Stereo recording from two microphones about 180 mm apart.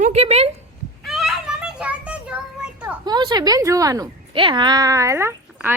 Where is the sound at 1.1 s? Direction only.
Centre (ahead or behind).